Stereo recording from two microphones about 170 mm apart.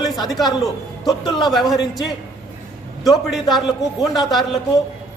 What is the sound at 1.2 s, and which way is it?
Speech, 25° left (ahead or behind).